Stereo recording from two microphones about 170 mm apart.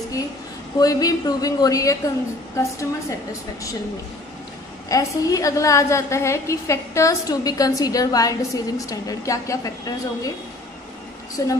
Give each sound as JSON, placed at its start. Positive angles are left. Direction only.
{"t": 0.7, "sound": "a woman's voice", "side_deg": 20}
{"t": 4.8, "sound": "a woman's voice", "side_deg": 20}
{"t": 11.4, "sound": "a woman's voice", "side_deg": 20}